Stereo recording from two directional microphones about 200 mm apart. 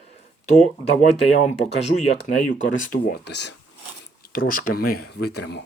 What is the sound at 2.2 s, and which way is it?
Speech, 40° left (ahead or behind).